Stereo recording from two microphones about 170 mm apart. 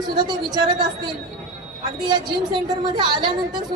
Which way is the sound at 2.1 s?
25° right (ahead or behind).